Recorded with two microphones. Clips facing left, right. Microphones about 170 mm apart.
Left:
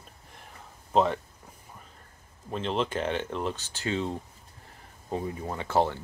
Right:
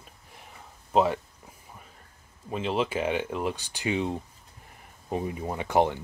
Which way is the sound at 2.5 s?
5° right (ahead or behind).